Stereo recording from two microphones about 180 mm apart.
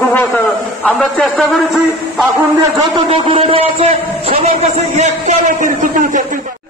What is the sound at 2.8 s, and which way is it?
A man's voice, 30° right (ahead or behind).